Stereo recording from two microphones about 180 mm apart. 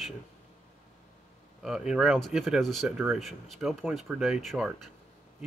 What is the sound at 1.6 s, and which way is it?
Speech, 5° right (ahead or behind).